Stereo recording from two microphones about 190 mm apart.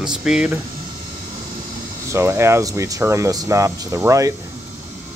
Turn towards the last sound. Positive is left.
turn(degrees=-15)  # may be behind; listen again after turning